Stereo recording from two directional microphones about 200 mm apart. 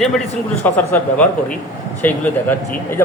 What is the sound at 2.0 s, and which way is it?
Speech, 10° left (ahead or behind).